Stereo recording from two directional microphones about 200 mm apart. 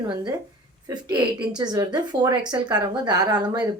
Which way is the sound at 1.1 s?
20° right (ahead or behind).